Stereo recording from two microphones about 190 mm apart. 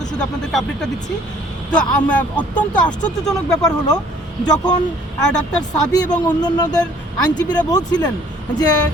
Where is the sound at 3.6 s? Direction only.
20° left (ahead or behind).